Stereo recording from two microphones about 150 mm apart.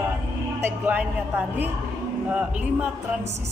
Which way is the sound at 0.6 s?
10° right (ahead or behind).